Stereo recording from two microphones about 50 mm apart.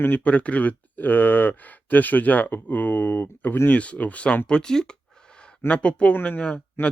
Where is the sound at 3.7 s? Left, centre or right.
Left.